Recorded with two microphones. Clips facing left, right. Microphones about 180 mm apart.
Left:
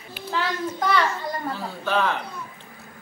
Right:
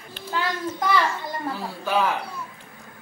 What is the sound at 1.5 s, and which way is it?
Speech, 10° right (ahead or behind).